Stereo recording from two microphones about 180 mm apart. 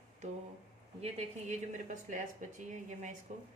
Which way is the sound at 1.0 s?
40° right (ahead or behind).